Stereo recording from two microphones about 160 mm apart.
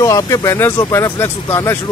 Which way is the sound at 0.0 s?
20° left (ahead or behind).